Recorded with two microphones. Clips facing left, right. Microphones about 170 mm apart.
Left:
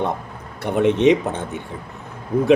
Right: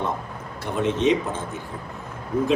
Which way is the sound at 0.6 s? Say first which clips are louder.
Left 6 dB; 60° left (ahead or behind).